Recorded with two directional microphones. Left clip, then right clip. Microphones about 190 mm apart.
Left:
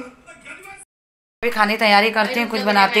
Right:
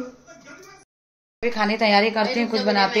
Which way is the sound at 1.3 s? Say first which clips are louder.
Left 4 dB; centre (ahead or behind).